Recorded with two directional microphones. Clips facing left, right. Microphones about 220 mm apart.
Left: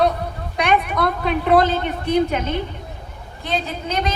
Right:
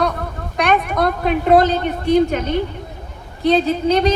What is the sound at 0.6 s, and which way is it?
A woman's voice, 50° right (ahead or behind).